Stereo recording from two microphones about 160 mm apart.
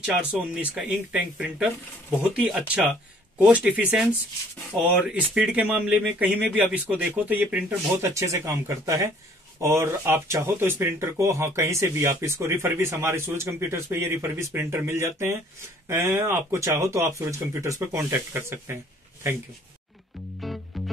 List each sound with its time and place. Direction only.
0.0 s speech: 5° right (ahead or behind)
20.3 s music: centre (ahead or behind)